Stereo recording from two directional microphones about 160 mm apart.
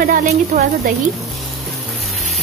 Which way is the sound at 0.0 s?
60° right (ahead or behind).